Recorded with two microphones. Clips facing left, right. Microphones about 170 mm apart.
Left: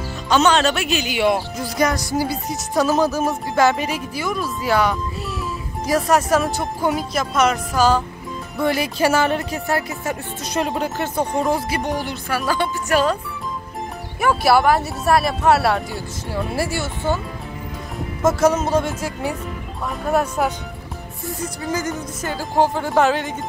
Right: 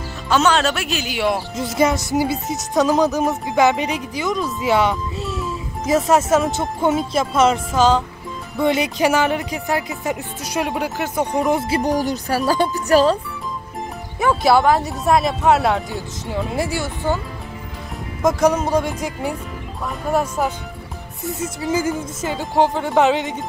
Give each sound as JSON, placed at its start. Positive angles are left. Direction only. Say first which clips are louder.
{"t": 0.3, "sound": "music", "louder": "left 1 dB", "side_deg": 0}
{"t": 1.6, "sound": "speech", "louder": "right 2 dB", "side_deg": -25}
{"t": 2.4, "sound": "music", "louder": "right 1 dB", "side_deg": 0}
{"t": 2.8, "sound": "speech", "louder": "right 1 dB", "side_deg": -20}
{"t": 4.6, "sound": "music", "louder": "right 1 dB", "side_deg": -25}
{"t": 6.3, "sound": "speech", "louder": "right 2 dB", "side_deg": -20}
{"t": 11.5, "sound": "speech", "louder": "right 4 dB", "side_deg": -30}
{"t": 15.1, "sound": "music", "louder": "even", "side_deg": 5}
{"t": 15.5, "sound": "speech", "louder": "even", "side_deg": -15}
{"t": 18.2, "sound": "speech", "louder": "even", "side_deg": -15}
{"t": 18.9, "sound": "music", "louder": "right 1 dB", "side_deg": 5}